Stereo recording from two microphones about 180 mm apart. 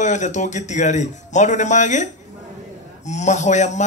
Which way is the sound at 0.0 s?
40° left (ahead or behind).